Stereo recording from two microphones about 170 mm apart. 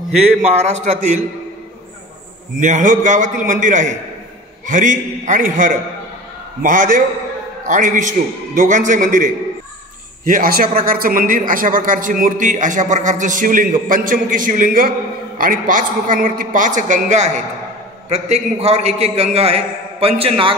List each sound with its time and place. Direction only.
0.4 s a man's voice: 40° right (ahead or behind)
2.6 s a man's voice: 50° right (ahead or behind); by 20.5 s 35° right (ahead or behind)